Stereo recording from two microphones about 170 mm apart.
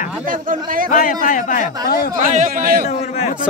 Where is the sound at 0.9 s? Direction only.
50° left (ahead or behind).